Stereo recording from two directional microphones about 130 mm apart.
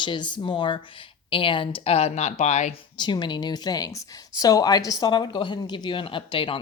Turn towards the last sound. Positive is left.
turn(degrees=40)  # may be behind; listen again after turning